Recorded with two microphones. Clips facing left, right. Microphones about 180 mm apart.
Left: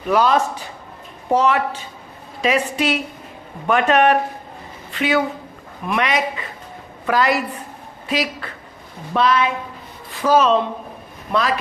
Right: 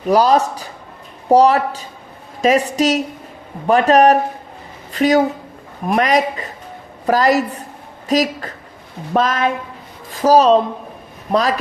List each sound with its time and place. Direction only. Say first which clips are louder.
0.1 s a man's voice: right 3 dB; 35° right (ahead or behind)